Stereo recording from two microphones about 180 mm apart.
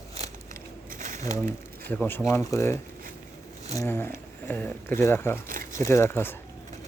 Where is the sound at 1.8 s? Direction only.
10° left (ahead or behind).